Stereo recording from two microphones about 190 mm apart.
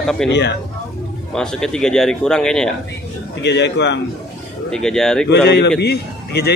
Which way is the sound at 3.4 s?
65° left (ahead or behind).